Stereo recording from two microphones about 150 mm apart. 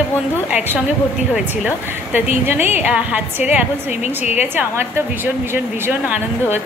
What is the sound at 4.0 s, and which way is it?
Speech, 45° left (ahead or behind).